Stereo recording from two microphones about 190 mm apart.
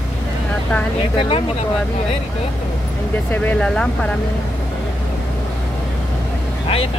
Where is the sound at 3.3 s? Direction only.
5° left (ahead or behind).